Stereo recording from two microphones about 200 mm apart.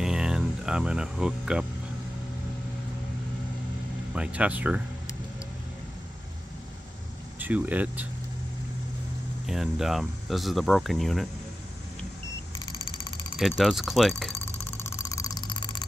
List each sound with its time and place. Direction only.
0.0 s music: 5° right (ahead or behind)
4.1 s speech: 5° right (ahead or behind)
7.3 s speech: 10° right (ahead or behind)
9.5 s speech: centre (ahead or behind)
13.4 s speech: centre (ahead or behind)
14.8 s vehicle: 15° left (ahead or behind)